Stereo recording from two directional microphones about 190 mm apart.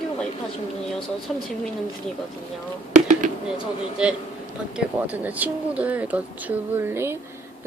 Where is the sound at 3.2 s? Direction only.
45° right (ahead or behind).